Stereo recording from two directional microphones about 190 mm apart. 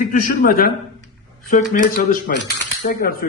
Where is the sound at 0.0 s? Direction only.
45° left (ahead or behind).